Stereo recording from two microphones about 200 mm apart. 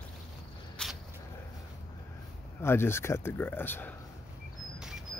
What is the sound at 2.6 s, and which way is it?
Speech, 10° left (ahead or behind).